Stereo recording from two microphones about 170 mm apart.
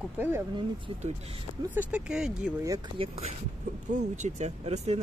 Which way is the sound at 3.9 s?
45° right (ahead or behind).